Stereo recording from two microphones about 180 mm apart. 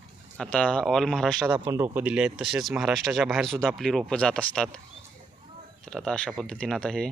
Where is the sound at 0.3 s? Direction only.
5° left (ahead or behind).